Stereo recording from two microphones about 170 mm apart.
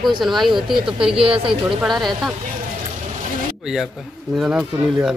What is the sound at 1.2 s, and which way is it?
Speech, 35° right (ahead or behind).